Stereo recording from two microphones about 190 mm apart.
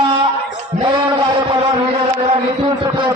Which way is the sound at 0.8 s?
25° right (ahead or behind).